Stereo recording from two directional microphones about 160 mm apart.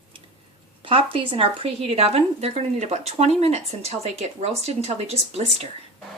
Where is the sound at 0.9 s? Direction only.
35° right (ahead or behind).